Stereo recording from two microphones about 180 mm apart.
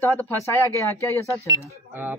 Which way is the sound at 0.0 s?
10° left (ahead or behind).